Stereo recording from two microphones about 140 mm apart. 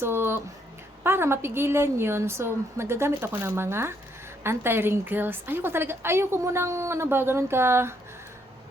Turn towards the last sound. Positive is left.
turn(degrees=-15)  # may be behind; listen again after turning